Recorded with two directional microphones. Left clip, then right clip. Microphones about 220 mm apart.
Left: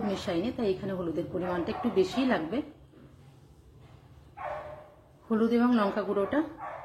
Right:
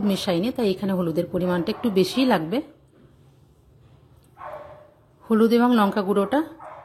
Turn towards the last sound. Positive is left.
turn(degrees=-50)  # may be behind; listen again after turning